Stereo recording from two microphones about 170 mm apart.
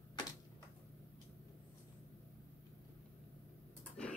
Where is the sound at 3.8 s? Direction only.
5° left (ahead or behind).